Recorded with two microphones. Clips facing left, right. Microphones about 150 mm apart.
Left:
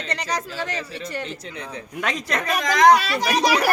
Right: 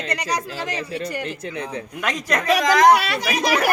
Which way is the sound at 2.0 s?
25° left (ahead or behind).